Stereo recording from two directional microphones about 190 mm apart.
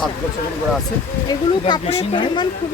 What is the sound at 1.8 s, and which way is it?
Speech, 30° left (ahead or behind).